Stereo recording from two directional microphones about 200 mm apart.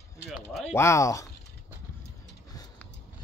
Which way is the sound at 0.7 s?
15° left (ahead or behind).